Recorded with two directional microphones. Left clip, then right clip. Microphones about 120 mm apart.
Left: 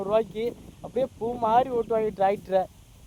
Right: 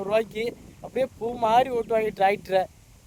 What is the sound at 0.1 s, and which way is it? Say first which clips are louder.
Speech: even; 30° right (ahead or behind).